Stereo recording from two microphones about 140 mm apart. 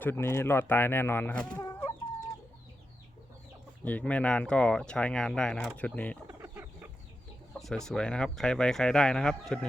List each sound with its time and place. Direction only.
0.0 s speech: 15° left (ahead or behind)
3.8 s speech: 10° left (ahead or behind)
6.2 s chicken: 15° right (ahead or behind)
7.6 s speech: 5° left (ahead or behind)